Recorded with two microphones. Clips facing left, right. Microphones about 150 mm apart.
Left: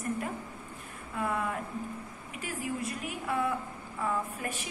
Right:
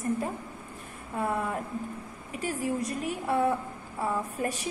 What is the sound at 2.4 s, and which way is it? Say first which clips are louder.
A woman's voice: right 5 dB; 35° right (ahead or behind).